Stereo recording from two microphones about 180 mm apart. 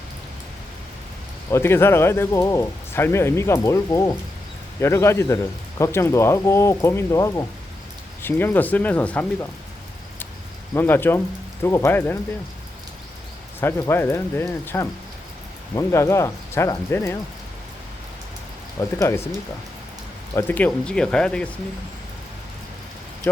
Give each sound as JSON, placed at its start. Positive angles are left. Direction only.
{"t": 1.5, "sound": "speech", "side_deg": 15}
{"t": 10.8, "sound": "speech", "side_deg": 10}
{"t": 13.6, "sound": "speech", "side_deg": 15}
{"t": 18.8, "sound": "speech", "side_deg": 15}
{"t": 20.3, "sound": "speech", "side_deg": 10}
{"t": 23.3, "sound": "speech", "side_deg": 10}